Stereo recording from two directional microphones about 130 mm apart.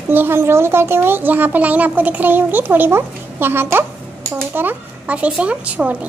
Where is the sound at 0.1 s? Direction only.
15° right (ahead or behind).